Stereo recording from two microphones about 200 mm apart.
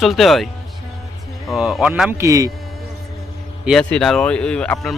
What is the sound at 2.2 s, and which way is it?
Speech, 15° right (ahead or behind).